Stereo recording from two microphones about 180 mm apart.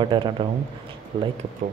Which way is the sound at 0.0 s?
25° right (ahead or behind).